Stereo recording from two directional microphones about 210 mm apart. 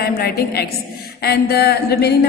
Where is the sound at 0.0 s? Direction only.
50° left (ahead or behind).